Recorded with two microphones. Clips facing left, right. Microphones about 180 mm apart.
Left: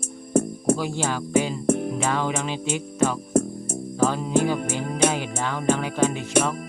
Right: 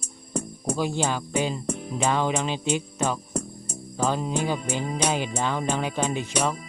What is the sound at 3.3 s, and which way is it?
Music, 55° left (ahead or behind).